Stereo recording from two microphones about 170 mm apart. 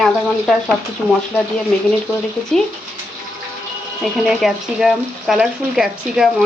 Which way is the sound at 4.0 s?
Centre (ahead or behind).